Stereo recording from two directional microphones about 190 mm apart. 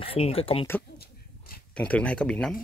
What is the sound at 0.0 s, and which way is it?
Speech, 30° left (ahead or behind).